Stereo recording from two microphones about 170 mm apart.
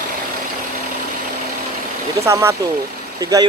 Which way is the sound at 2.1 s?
15° right (ahead or behind).